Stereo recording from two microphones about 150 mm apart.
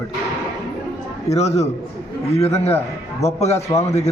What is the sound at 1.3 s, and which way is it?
A man's voice, 45° left (ahead or behind).